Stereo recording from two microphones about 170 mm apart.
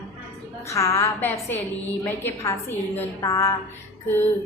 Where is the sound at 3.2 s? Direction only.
20° left (ahead or behind).